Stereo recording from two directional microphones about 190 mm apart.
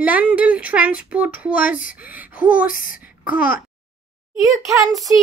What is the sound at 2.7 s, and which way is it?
Speech, 45° left (ahead or behind).